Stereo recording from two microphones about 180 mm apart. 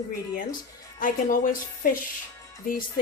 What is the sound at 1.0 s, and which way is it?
Speech, 50° left (ahead or behind).